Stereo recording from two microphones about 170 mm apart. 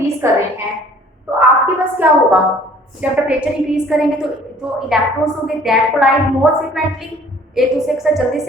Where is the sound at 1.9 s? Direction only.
10° right (ahead or behind).